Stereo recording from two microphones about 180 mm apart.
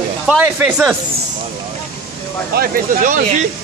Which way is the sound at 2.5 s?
55° right (ahead or behind).